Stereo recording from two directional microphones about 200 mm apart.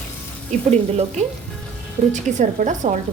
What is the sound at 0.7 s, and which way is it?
A woman's voice, 35° right (ahead or behind).